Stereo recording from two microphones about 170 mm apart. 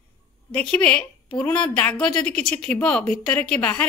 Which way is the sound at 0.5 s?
5° left (ahead or behind).